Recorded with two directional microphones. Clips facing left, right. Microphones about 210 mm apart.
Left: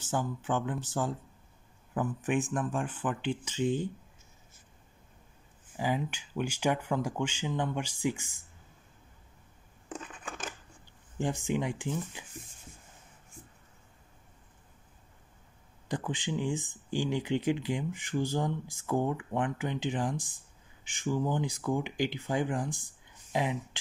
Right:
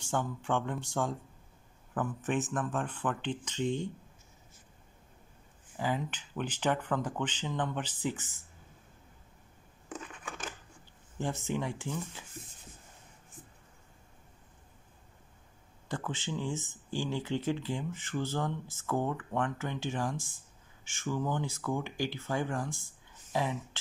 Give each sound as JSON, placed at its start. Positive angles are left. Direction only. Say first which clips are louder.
{"t": 0.0, "sound": "speech", "louder": "left 1 dB", "side_deg": 5}
{"t": 5.8, "sound": "speech", "louder": "left 2 dB", "side_deg": 15}
{"t": 11.1, "sound": "speech", "louder": "left 3 dB", "side_deg": 15}
{"t": 15.9, "sound": "speech", "louder": "left 3 dB", "side_deg": 15}